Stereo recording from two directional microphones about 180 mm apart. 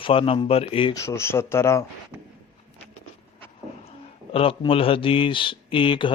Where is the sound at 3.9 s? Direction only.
35° left (ahead or behind).